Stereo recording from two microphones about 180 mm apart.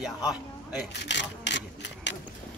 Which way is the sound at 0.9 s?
75° left (ahead or behind).